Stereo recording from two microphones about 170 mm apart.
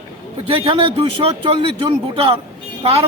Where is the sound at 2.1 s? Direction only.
35° right (ahead or behind).